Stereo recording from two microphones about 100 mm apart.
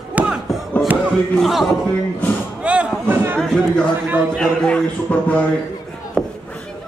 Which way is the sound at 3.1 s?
25° right (ahead or behind).